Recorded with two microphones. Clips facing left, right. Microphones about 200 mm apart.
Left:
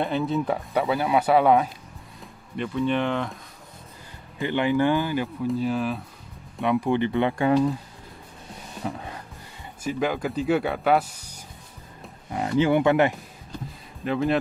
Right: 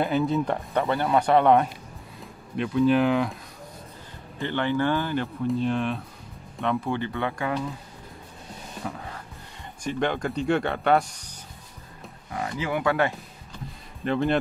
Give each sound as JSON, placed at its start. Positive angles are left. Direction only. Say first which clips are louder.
{"t": 0.0, "sound": "speech", "louder": "right 1 dB", "side_deg": 0}
{"t": 4.4, "sound": "speech", "louder": "left 3 dB", "side_deg": 15}
{"t": 6.6, "sound": "speech", "louder": "left 4 dB", "side_deg": 15}
{"t": 8.8, "sound": "speech", "louder": "left 3 dB", "side_deg": 25}
{"t": 9.8, "sound": "speech", "louder": "left 1 dB", "side_deg": 5}
{"t": 12.3, "sound": "speech", "louder": "left 8 dB", "side_deg": 25}
{"t": 14.0, "sound": "speech", "louder": "even", "side_deg": 0}